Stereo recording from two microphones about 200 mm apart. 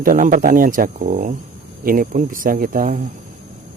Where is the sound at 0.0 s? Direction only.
45° right (ahead or behind).